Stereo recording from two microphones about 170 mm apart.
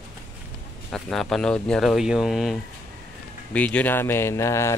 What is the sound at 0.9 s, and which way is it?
Speech, centre (ahead or behind).